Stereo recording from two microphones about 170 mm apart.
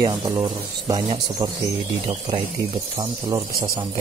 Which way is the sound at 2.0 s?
30° right (ahead or behind).